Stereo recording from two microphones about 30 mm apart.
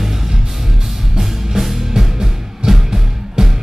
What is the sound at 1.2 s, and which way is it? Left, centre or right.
Music, centre.